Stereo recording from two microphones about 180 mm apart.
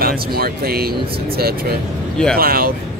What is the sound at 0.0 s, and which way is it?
Speech, 55° right (ahead or behind).